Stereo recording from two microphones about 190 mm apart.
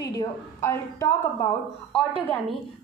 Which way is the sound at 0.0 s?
20° left (ahead or behind).